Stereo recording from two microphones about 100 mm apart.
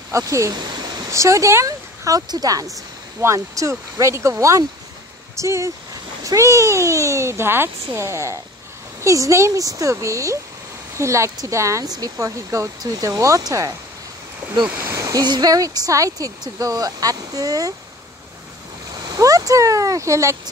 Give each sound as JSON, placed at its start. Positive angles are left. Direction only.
{"t": 0.1, "sound": "a child's voice", "side_deg": -30}
{"t": 14.8, "sound": "speech", "side_deg": -30}
{"t": 15.2, "sound": "speech", "side_deg": -45}
{"t": 19.1, "sound": "speech", "side_deg": -35}